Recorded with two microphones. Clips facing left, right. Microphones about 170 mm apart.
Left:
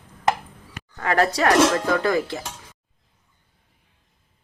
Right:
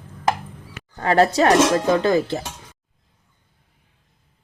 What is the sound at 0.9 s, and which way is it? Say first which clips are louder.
Speech: right 4 dB; 30° right (ahead or behind).